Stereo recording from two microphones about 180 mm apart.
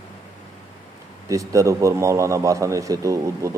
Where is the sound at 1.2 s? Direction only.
20° right (ahead or behind).